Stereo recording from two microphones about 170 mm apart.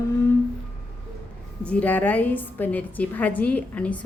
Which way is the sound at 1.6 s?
10° left (ahead or behind).